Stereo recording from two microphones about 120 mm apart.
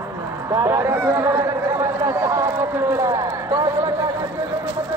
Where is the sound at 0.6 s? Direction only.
20° right (ahead or behind).